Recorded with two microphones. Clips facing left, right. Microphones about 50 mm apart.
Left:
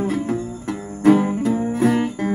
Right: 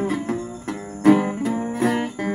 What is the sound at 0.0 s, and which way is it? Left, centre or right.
Music, right.